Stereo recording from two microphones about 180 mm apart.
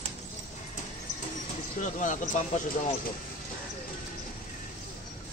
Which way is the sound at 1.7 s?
45° left (ahead or behind).